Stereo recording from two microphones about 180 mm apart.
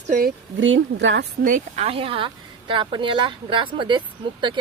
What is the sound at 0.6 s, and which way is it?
Speech, 90° right.